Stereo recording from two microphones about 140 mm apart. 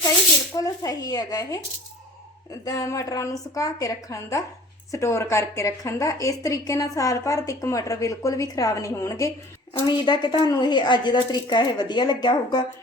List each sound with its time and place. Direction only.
0.5 s a woman's voice: 25° left (ahead or behind)